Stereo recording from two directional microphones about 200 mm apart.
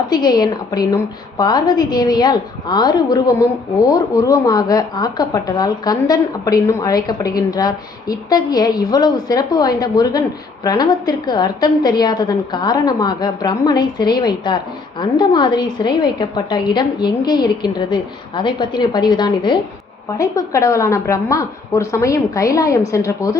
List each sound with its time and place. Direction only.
0.1 s a woman's voice: 20° left (ahead or behind)